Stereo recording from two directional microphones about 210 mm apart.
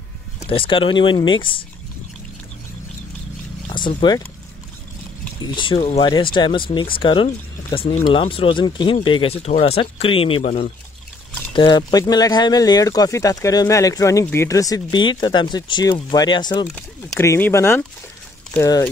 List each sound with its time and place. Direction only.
0.5 s speech: 25° left (ahead or behind)
3.6 s speech: 20° left (ahead or behind)
5.4 s speech: 20° left (ahead or behind)
11.5 s speech: 20° left (ahead or behind)
16.7 s speech: 10° left (ahead or behind)